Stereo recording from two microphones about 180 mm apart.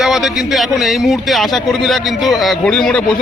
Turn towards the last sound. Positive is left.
turn(degrees=5)  # may be behind; listen again after turning